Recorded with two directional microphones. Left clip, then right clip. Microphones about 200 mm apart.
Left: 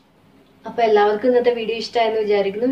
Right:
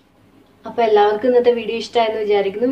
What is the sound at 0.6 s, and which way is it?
A woman's voice, 15° right (ahead or behind).